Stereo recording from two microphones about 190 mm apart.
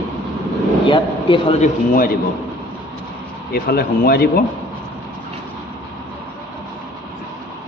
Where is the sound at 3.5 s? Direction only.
55° left (ahead or behind).